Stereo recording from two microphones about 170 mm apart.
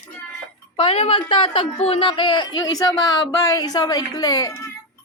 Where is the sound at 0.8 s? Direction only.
35° left (ahead or behind).